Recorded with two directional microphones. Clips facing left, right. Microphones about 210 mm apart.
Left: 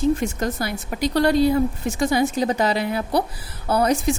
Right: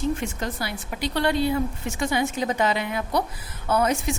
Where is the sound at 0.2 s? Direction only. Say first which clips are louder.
Left 5 dB; 45° left (ahead or behind).